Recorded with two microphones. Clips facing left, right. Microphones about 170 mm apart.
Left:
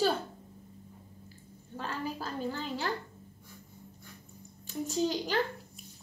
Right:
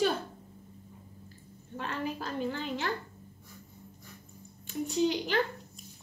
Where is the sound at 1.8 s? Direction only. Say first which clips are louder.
Right 1 dB; 35° left (ahead or behind).